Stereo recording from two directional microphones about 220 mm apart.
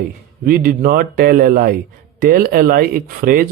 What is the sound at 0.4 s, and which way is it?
Speech, 40° right (ahead or behind).